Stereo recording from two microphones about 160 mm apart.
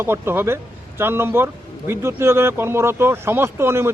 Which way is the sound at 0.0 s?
15° right (ahead or behind).